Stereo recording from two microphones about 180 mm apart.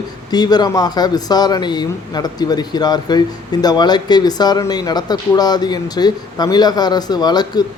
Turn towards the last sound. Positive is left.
turn(degrees=20)  # may be behind; listen again after turning